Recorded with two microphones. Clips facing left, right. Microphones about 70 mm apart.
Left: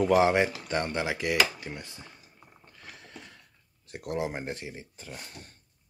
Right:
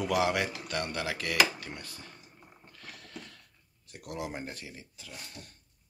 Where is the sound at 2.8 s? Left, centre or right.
Centre.